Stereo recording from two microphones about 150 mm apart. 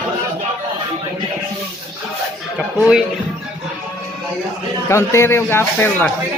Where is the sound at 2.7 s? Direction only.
5° right (ahead or behind).